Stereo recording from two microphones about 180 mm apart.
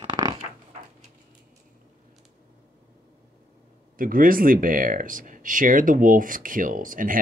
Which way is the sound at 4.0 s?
50° right (ahead or behind).